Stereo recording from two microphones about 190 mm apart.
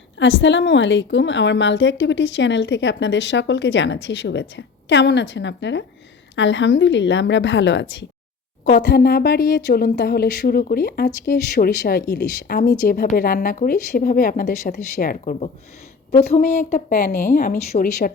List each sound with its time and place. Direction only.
0.2 s a woman's voice: 80° left
8.6 s a woman's voice: 60° left (ahead or behind); by 18.1 s 40° left (ahead or behind)